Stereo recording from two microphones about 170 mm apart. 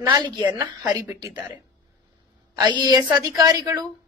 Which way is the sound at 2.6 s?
25° right (ahead or behind).